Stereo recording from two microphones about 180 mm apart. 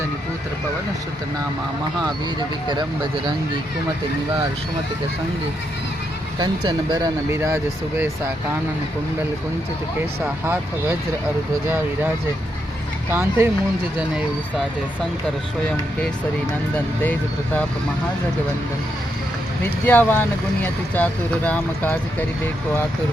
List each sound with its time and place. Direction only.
2.6 s speech: 25° right (ahead or behind)
6.4 s speech: 25° right (ahead or behind)
10.4 s speech: 10° right (ahead or behind)
13.1 s speech: 15° right (ahead or behind)
16.7 s speech: 10° left (ahead or behind)
19.9 s speech: 10° left (ahead or behind)